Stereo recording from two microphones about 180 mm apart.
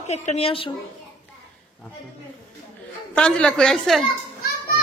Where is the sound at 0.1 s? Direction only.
40° left (ahead or behind).